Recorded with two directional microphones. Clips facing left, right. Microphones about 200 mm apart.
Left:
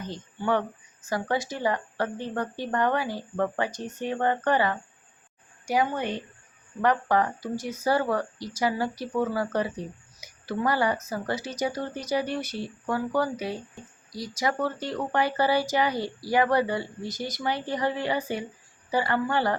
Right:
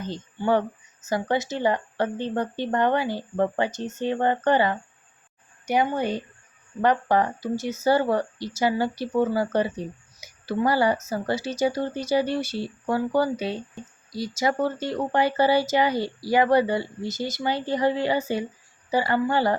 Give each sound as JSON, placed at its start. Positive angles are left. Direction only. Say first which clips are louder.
{"t": 0.1, "sound": "a woman's voice", "louder": "right 4 dB", "side_deg": -30}